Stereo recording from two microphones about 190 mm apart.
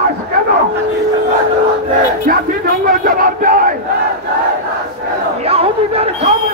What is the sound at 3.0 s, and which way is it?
Crowd, 45° right (ahead or behind).